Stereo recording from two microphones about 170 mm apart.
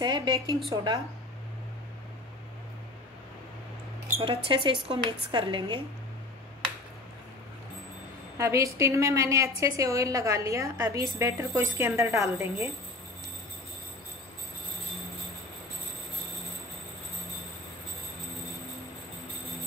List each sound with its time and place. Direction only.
0.0 s a woman's voice: 25° right (ahead or behind)
4.2 s a woman's voice: 30° right (ahead or behind)
8.4 s a woman's voice: 15° right (ahead or behind)